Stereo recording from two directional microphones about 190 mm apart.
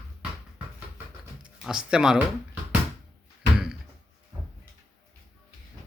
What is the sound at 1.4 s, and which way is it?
Speech, 5° right (ahead or behind).